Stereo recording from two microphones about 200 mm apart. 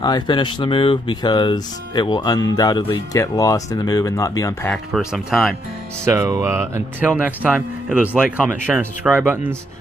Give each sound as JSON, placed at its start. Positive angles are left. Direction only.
{"t": 0.0, "sound": "speech", "side_deg": 20}
{"t": 4.6, "sound": "speech", "side_deg": 0}
{"t": 6.0, "sound": "speech", "side_deg": -15}